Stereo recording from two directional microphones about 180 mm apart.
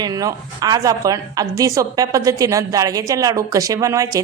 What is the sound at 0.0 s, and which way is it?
A woman's voice, 20° right (ahead or behind).